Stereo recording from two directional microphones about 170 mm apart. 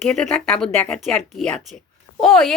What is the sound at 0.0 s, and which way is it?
A woman's voice, 5° left (ahead or behind).